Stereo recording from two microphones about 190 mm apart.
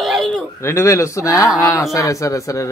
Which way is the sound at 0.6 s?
15° left (ahead or behind).